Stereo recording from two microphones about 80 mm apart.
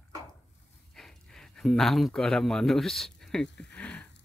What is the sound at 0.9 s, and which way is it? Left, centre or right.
Speech, centre.